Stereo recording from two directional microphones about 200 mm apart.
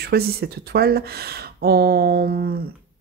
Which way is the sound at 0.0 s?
50° right (ahead or behind).